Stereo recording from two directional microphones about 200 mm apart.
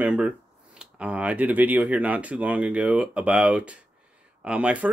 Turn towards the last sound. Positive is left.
turn(degrees=-5)  # may be behind; listen again after turning